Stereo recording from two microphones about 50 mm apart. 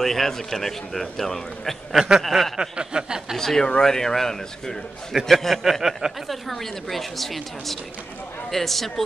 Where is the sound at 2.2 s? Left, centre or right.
Centre.